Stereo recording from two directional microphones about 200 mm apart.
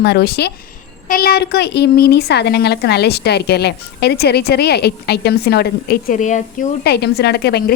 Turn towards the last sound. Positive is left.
turn(degrees=55)  # may be behind; listen again after turning